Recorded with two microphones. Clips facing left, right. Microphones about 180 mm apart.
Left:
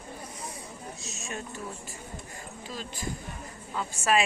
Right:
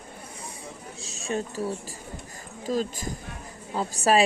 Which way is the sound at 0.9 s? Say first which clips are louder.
Right 12 dB; 30° right (ahead or behind).